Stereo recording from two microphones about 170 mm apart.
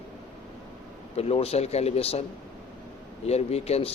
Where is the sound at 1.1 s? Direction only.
35° left (ahead or behind).